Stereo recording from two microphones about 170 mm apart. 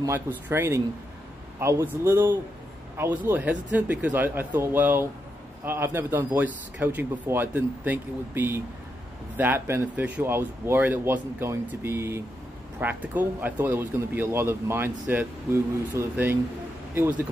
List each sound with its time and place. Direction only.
0.0 s speech: 15° right (ahead or behind)